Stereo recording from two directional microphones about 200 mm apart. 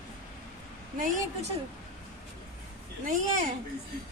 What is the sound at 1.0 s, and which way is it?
Speech, 40° right (ahead or behind).